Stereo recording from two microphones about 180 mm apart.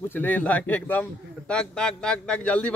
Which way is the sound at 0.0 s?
10° left (ahead or behind).